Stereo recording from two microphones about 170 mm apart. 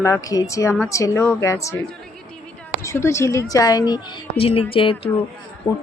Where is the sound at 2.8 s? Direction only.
15° left (ahead or behind).